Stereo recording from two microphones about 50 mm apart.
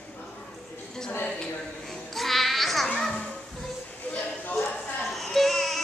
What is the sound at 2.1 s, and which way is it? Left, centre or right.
Baby cry, centre.